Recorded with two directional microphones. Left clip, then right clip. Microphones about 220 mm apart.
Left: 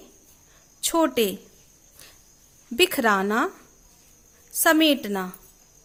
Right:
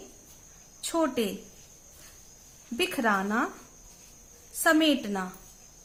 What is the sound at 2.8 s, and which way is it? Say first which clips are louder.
Speech: left 6 dB; 45° left (ahead or behind).